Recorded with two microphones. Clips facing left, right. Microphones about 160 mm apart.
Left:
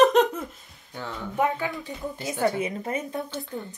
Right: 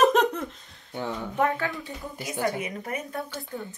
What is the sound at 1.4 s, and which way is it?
Speech, 15° left (ahead or behind).